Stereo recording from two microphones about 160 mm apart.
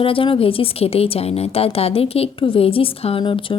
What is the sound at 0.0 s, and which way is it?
A woman's voice, 35° left (ahead or behind).